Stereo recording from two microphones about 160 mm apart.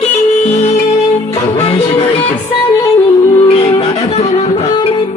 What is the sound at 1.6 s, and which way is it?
Music, 35° left (ahead or behind).